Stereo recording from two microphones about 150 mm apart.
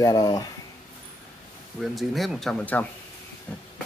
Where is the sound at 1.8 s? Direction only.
Centre (ahead or behind).